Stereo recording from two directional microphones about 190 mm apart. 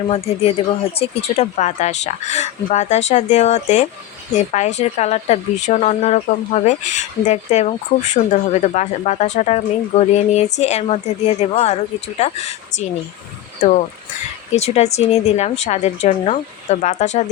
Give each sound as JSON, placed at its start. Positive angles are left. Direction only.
{"t": 0.9, "sound": "speech", "side_deg": 35}
{"t": 14.5, "sound": "speech", "side_deg": 35}